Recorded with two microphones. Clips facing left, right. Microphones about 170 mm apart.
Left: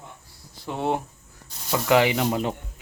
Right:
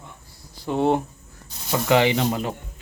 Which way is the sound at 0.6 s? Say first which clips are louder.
Right 5 dB; centre (ahead or behind).